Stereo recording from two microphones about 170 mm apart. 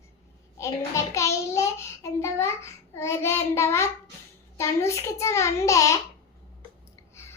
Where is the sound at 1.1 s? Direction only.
20° left (ahead or behind).